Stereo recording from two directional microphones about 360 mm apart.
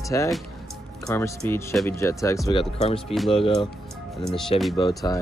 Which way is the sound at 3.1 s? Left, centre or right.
Centre.